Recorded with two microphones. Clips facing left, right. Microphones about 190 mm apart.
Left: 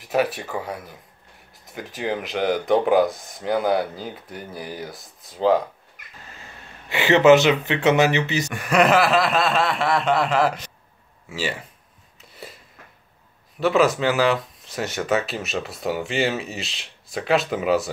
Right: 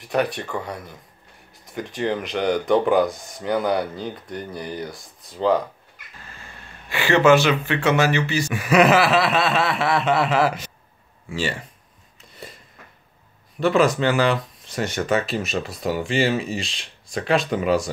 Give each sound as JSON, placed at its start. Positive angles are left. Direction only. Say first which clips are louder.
{"t": 0.0, "sound": "speech", "louder": "left 1 dB", "side_deg": 5}
{"t": 6.9, "sound": "speech", "louder": "left 2 dB", "side_deg": 20}
{"t": 8.5, "sound": "speech", "louder": "right 3 dB", "side_deg": -5}
{"t": 11.2, "sound": "speech", "louder": "right 2 dB", "side_deg": 5}
{"t": 12.2, "sound": "a sound", "louder": "even", "side_deg": 5}
{"t": 13.6, "sound": "speech", "louder": "even", "side_deg": 5}